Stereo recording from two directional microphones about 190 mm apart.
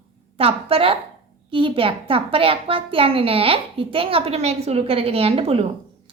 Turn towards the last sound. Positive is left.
turn(degrees=-30)  # may be behind; listen again after turning